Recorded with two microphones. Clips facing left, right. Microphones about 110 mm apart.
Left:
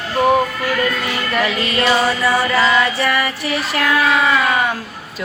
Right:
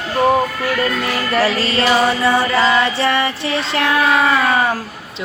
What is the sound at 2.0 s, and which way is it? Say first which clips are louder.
Female singing: right 2 dB; 30° right (ahead or behind).